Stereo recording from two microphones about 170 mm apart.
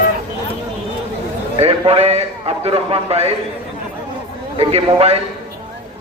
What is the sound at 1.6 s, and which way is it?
A man's voice, 35° right (ahead or behind).